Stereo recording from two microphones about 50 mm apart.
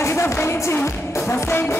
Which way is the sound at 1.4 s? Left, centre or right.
Left.